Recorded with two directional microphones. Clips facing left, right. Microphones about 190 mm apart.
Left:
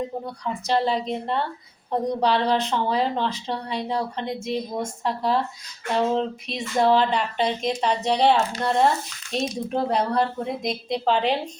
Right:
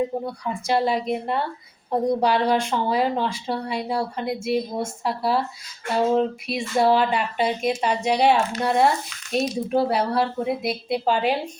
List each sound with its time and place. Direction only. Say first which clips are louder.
0.3 s speech: right 1 dB; 10° right (ahead or behind)